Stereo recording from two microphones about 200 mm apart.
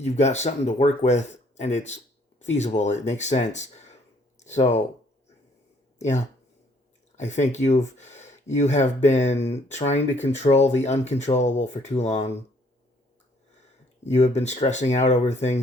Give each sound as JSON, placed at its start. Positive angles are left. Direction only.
{"t": 0.0, "sound": "speech", "side_deg": 35}
{"t": 6.0, "sound": "speech", "side_deg": 35}
{"t": 14.0, "sound": "speech", "side_deg": 35}